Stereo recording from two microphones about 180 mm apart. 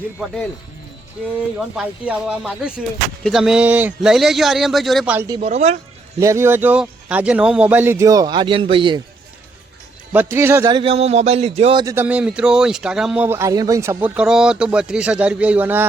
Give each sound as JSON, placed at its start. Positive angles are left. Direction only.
{"t": 1.5, "sound": "speech", "side_deg": -5}
{"t": 5.1, "sound": "speech", "side_deg": -15}
{"t": 5.4, "sound": "speech", "side_deg": -40}
{"t": 6.1, "sound": "speech", "side_deg": -15}
{"t": 10.1, "sound": "a man's voice", "side_deg": -10}
{"t": 11.8, "sound": "a man's voice", "side_deg": -20}
{"t": 12.0, "sound": "speech", "side_deg": -5}